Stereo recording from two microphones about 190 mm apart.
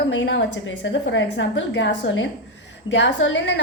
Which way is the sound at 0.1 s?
75° left (ahead or behind).